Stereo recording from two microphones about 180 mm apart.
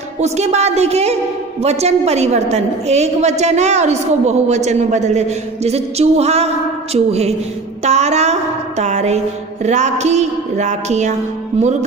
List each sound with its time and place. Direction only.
0.2 s a woman's voice: 35° right (ahead or behind)